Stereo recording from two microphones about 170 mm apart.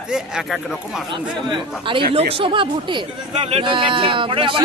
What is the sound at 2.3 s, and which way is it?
Speech, 30° right (ahead or behind).